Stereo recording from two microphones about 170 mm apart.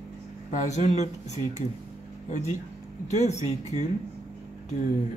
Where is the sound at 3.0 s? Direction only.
40° left (ahead or behind).